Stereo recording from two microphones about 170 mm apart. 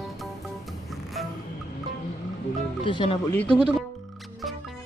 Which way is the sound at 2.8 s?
30° left (ahead or behind).